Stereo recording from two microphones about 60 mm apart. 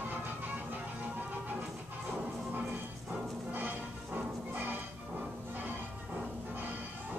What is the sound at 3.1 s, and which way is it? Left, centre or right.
Music, centre.